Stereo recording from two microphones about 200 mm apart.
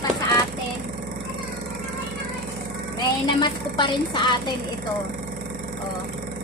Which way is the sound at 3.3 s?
25° left (ahead or behind).